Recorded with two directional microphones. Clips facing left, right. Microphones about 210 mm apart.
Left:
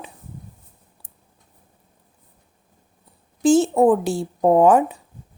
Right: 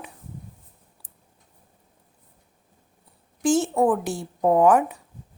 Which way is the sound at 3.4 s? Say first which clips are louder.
Left 5 dB; 25° left (ahead or behind).